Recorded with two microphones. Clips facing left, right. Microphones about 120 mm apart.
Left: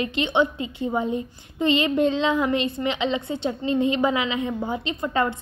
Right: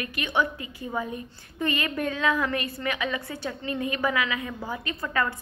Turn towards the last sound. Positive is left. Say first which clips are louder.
# left 4 dB
turn(degrees=25)  # may be behind; listen again after turning